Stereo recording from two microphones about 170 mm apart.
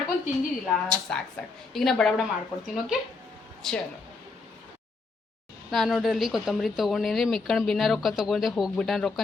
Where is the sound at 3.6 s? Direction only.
Centre (ahead or behind).